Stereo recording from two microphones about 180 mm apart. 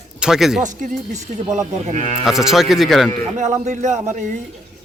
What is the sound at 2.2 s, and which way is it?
Speech, centre (ahead or behind).